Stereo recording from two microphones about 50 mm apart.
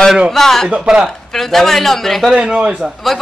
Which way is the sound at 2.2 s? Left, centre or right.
Right.